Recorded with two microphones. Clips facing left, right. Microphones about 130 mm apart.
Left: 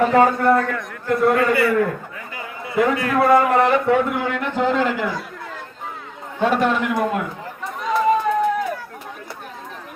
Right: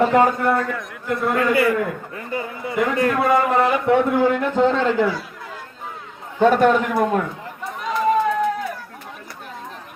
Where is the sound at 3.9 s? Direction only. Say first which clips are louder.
Right 3 dB; 30° right (ahead or behind).